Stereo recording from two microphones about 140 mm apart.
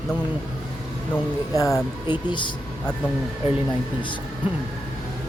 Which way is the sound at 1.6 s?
25° left (ahead or behind).